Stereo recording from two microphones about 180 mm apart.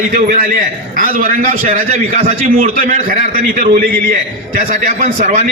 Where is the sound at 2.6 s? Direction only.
50° right (ahead or behind).